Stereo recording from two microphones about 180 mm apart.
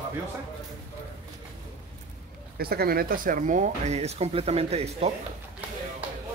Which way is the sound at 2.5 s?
60° right (ahead or behind).